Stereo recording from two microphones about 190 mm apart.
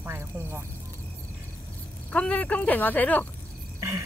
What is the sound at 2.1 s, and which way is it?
Speech, 5° left (ahead or behind).